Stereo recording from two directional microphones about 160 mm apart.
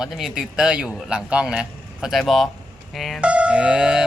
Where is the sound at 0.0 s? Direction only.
Centre (ahead or behind).